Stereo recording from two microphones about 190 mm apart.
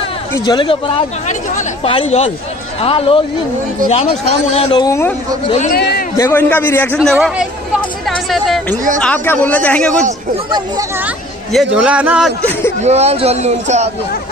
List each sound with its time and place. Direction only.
0.5 s speech: 25° left (ahead or behind)
1.2 s speech: 40° left (ahead or behind)
4.8 s a man's voice: 15° left (ahead or behind)
5.7 s speech: 55° left (ahead or behind)
6.1 s a man's voice: 10° left (ahead or behind)
7.0 s a man's voice: centre (ahead or behind)
11.5 s a man's voice: 5° right (ahead or behind)
12.8 s a man's voice: 35° right (ahead or behind)